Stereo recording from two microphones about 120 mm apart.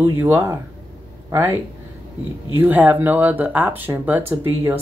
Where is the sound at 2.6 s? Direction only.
15° right (ahead or behind).